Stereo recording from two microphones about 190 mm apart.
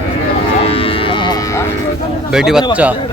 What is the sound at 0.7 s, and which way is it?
Cattle, 30° left (ahead or behind).